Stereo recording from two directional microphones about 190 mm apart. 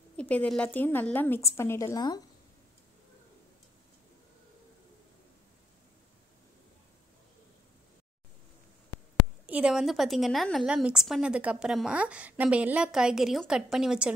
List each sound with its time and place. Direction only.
0.2 s a woman's voice: 5° left (ahead or behind)
9.5 s a woman's voice: 5° right (ahead or behind)